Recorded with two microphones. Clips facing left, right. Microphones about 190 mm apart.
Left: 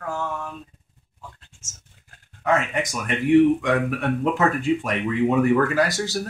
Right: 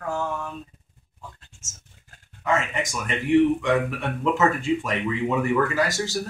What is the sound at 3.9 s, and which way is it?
Speech, 55° left (ahead or behind).